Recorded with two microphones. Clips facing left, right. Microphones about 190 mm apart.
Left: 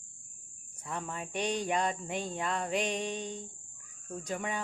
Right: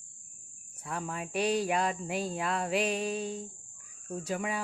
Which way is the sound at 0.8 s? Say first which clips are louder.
Right 2 dB; 5° right (ahead or behind).